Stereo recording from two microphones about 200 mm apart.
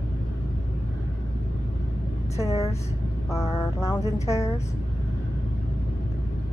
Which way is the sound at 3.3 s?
15° left (ahead or behind).